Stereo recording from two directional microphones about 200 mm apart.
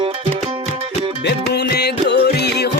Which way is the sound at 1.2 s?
55° left (ahead or behind).